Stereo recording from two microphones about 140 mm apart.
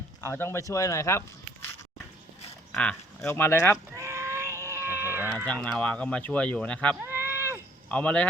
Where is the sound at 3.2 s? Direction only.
15° left (ahead or behind).